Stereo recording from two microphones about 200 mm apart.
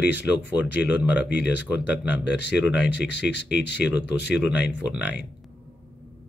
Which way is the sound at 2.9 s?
60° left (ahead or behind).